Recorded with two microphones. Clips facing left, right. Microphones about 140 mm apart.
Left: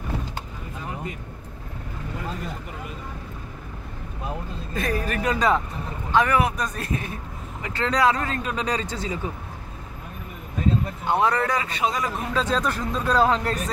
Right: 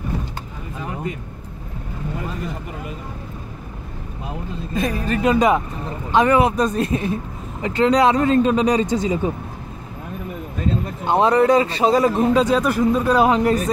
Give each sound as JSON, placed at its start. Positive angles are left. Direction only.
{"t": 4.7, "sound": "speech", "side_deg": -20}
{"t": 11.1, "sound": "speech", "side_deg": -20}
{"t": 12.1, "sound": "speech", "side_deg": -25}
{"t": 12.4, "sound": "speech", "side_deg": -10}